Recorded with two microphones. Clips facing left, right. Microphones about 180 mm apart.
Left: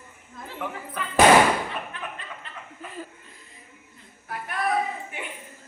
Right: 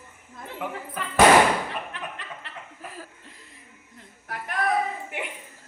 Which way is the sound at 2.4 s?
75° right (ahead or behind).